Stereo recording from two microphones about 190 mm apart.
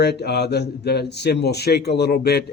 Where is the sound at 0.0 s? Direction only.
60° left (ahead or behind).